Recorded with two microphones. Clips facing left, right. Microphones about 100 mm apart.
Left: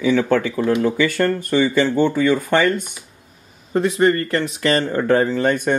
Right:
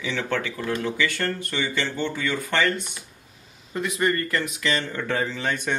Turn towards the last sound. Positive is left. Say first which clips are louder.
# left 9 dB
turn(degrees=50)  # may be behind; listen again after turning